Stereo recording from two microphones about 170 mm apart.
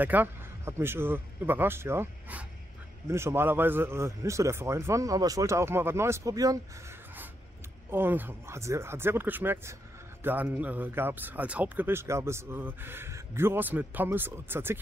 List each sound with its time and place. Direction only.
0.0 s speech: 10° right (ahead or behind)